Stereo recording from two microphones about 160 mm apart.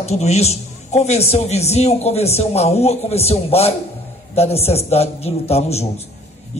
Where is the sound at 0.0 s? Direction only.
40° left (ahead or behind).